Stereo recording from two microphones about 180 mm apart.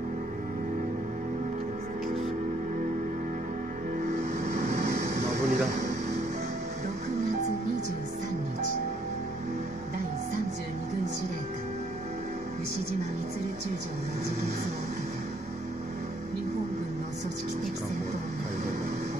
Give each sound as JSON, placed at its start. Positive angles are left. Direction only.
{"t": 4.5, "sound": "vehicle", "side_deg": -40}
{"t": 4.9, "sound": "air conditioning", "side_deg": -40}